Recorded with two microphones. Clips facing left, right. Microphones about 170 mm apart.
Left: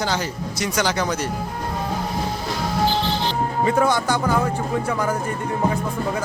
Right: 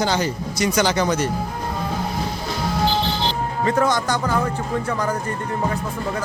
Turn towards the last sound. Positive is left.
turn(degrees=10)  # may be behind; listen again after turning